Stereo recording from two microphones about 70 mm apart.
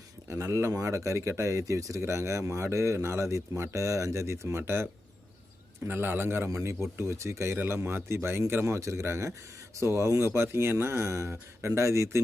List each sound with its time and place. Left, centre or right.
0.3 s speech: right